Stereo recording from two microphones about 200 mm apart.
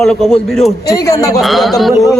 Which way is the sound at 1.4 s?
Centre (ahead or behind).